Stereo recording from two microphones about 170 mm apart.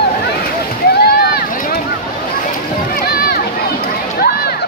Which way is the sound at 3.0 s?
65° left (ahead or behind).